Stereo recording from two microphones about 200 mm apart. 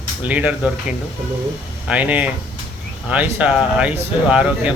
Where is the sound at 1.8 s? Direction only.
5° right (ahead or behind).